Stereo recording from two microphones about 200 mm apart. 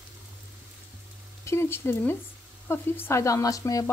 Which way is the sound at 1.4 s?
15° left (ahead or behind).